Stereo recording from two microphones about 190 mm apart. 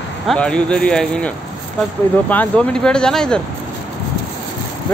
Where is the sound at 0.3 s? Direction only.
5° left (ahead or behind).